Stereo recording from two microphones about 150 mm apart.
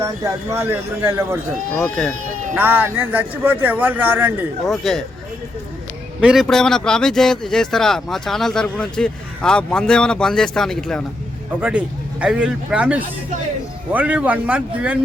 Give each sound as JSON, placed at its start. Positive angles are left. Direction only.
{"t": 0.0, "sound": "speech", "side_deg": -20}
{"t": 1.8, "sound": "a man's voice", "side_deg": 5}
{"t": 2.6, "sound": "speech", "side_deg": -10}
{"t": 4.7, "sound": "a man's voice", "side_deg": 0}
{"t": 6.1, "sound": "a man's voice", "side_deg": 0}
{"t": 12.2, "sound": "speech", "side_deg": -5}